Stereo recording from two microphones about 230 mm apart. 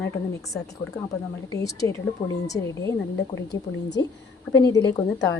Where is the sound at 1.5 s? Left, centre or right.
Centre.